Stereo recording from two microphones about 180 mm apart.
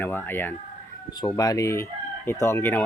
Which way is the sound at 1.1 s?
20° left (ahead or behind).